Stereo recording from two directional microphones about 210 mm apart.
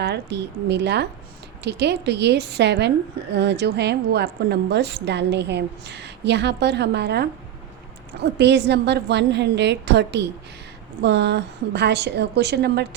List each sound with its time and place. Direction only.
0.0 s a woman's voice: 55° right (ahead or behind)